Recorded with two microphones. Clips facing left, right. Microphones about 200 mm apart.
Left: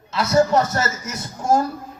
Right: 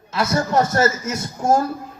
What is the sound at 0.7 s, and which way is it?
Speech, 50° right (ahead or behind).